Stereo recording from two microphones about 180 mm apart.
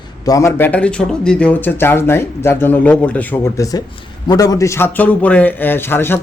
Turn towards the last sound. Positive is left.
turn(degrees=10)  # may be behind; listen again after turning